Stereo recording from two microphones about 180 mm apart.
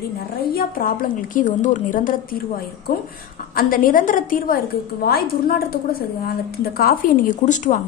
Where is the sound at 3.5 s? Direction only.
50° left (ahead or behind).